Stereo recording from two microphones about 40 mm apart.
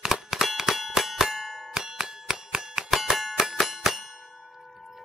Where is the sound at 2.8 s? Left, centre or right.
Centre.